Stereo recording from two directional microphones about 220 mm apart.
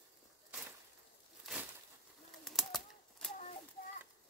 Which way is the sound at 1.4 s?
5° right (ahead or behind).